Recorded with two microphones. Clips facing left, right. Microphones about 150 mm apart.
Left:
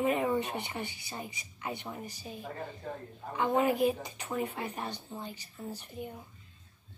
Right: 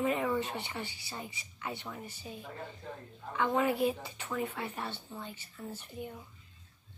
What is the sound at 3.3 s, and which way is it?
Speech, 15° left (ahead or behind).